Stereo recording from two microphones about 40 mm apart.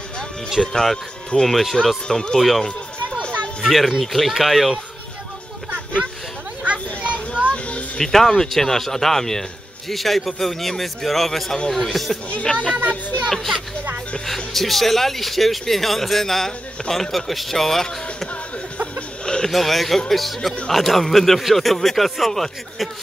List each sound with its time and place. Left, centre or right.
0.7 s speech: centre
2.0 s speech: centre
2.3 s speech: centre
3.6 s speech: centre
6.6 s a sound: right
7.4 s music: left
8.0 s speech: centre
14.2 s speech: centre
18.9 s chicken: left
19.4 s speech: centre